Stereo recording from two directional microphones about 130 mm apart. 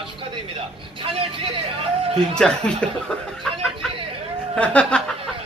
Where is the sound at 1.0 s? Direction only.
45° right (ahead or behind).